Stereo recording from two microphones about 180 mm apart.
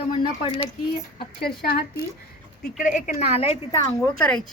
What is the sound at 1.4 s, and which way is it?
Speech, 60° left (ahead or behind).